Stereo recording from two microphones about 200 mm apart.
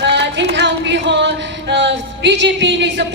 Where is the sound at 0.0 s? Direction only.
60° right (ahead or behind).